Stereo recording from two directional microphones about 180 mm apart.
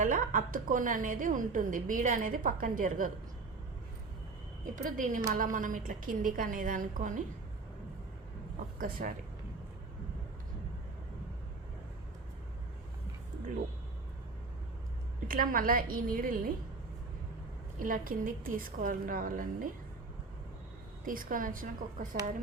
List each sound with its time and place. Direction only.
0.0 s a woman's voice: 50° right (ahead or behind)
4.6 s a woman's voice: 45° right (ahead or behind)
8.8 s a woman's voice: 50° right (ahead or behind)
15.3 s a woman's voice: 50° right (ahead or behind)
17.8 s a woman's voice: 50° right (ahead or behind)
21.0 s a woman's voice: 50° right (ahead or behind)